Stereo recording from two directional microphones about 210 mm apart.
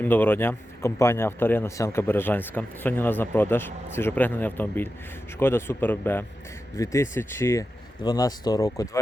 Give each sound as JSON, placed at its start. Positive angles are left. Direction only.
{"t": 0.0, "sound": "speech", "side_deg": 10}